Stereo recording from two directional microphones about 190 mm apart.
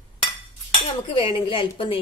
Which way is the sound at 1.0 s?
25° left (ahead or behind).